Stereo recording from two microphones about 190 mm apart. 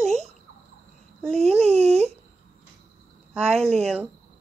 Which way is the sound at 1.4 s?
35° right (ahead or behind).